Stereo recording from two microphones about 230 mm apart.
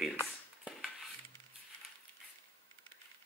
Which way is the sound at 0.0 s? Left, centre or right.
Centre.